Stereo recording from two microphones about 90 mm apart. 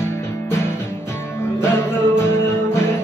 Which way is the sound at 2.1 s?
30° left (ahead or behind).